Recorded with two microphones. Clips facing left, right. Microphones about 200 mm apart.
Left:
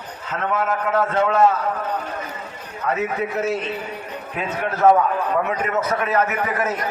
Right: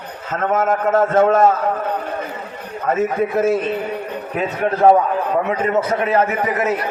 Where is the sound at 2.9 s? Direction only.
50° right (ahead or behind).